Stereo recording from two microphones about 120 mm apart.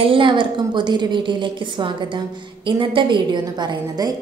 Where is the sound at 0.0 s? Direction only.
45° right (ahead or behind).